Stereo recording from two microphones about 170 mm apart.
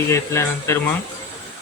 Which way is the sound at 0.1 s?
15° left (ahead or behind).